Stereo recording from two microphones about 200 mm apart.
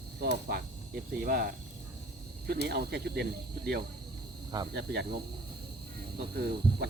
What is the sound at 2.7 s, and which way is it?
Speech, 55° right (ahead or behind).